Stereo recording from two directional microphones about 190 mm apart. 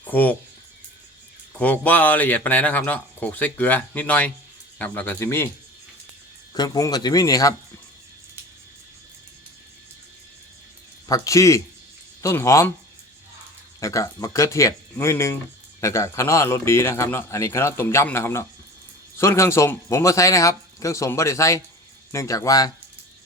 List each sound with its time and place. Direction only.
0.0 s speech: 10° left (ahead or behind)
1.5 s speech: 10° left (ahead or behind)
6.5 s a man's voice: 20° left (ahead or behind)
11.1 s speech: 15° left (ahead or behind)
13.7 s speech: 15° left (ahead or behind)